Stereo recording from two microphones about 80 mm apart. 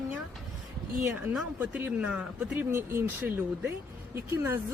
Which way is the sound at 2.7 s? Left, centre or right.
Right.